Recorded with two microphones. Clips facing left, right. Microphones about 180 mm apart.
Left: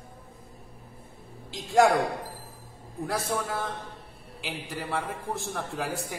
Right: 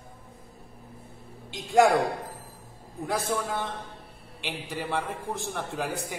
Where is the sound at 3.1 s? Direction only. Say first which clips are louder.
Right 2 dB; centre (ahead or behind).